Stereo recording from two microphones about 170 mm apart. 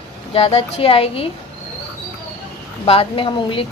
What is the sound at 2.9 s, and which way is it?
Speech, 35° left (ahead or behind).